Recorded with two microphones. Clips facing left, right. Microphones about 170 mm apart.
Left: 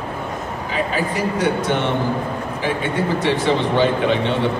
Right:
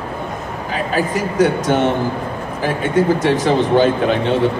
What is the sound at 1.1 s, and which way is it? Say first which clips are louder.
A man's voice: right 4 dB; 45° right (ahead or behind).